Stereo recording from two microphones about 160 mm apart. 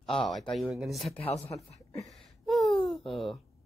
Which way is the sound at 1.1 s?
35° left (ahead or behind).